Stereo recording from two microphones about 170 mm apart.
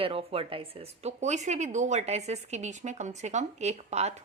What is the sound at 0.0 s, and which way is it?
Speech, 35° right (ahead or behind).